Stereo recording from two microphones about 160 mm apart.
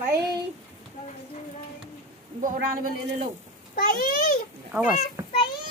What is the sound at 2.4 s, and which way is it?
Speech, 55° right (ahead or behind).